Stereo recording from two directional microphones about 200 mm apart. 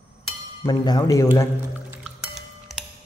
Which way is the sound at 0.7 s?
20° left (ahead or behind).